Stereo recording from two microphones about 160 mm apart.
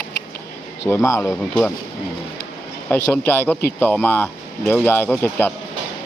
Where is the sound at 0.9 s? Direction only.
15° left (ahead or behind).